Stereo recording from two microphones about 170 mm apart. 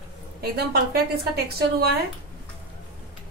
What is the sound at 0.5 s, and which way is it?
A woman's voice, 70° right (ahead or behind).